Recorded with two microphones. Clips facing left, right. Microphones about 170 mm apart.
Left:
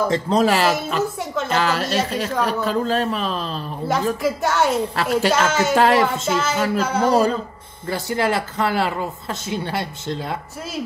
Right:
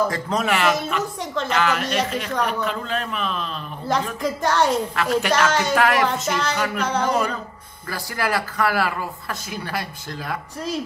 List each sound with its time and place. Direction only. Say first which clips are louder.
0.1 s a man's voice: left 5 dB; 30° left (ahead or behind)
4.2 s a woman's voice: left 1 dB; 5° left (ahead or behind)
4.9 s a man's voice: left 2 dB; 30° left (ahead or behind)
5.3 s a woman's voice: left 1 dB; 5° left (ahead or behind)
5.8 s speech: left 5 dB; 30° left (ahead or behind)
6.8 s a woman's voice: left 3 dB; 5° left (ahead or behind)
7.1 s a man's voice: left 5 dB; 35° left (ahead or behind)